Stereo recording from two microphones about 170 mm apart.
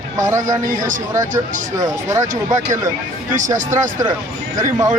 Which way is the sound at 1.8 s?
20° right (ahead or behind).